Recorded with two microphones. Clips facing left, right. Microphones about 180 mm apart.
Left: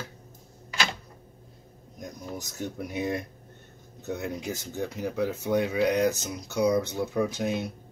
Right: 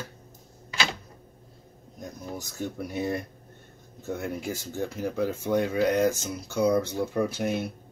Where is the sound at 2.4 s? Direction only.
20° left (ahead or behind).